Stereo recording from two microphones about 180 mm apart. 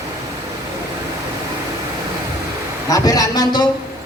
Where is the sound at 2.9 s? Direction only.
20° left (ahead or behind).